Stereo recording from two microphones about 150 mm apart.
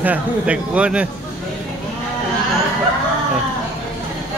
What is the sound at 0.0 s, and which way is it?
A man's voice, 10° right (ahead or behind).